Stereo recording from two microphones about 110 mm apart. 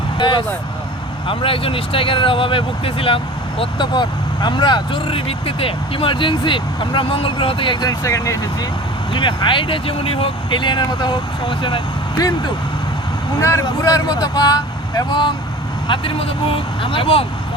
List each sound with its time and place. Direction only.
0.2 s speech: 45° left (ahead or behind)
3.6 s speech: 45° left (ahead or behind)
9.1 s speech: 45° left (ahead or behind)
13.4 s speech: 25° left (ahead or behind)
15.9 s speech: 55° left (ahead or behind)